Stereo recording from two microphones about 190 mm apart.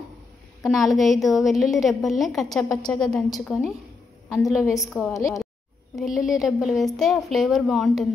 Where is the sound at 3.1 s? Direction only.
5° left (ahead or behind).